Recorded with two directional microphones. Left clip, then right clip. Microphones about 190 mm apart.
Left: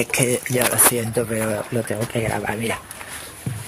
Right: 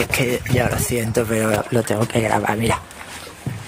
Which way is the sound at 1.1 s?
15° right (ahead or behind).